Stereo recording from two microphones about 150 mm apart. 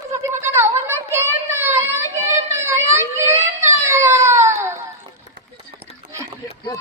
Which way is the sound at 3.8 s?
20° right (ahead or behind).